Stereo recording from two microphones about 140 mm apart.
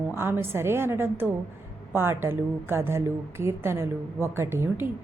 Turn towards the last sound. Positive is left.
turn(degrees=-15)  # may be behind; listen again after turning